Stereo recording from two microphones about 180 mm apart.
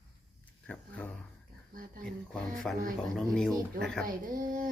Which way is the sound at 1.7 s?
50° right (ahead or behind).